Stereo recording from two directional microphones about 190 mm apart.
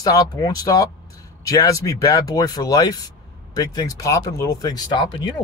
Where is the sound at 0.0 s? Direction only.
20° left (ahead or behind).